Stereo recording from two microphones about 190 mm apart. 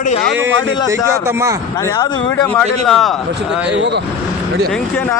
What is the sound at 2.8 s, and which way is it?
Speech, centre (ahead or behind).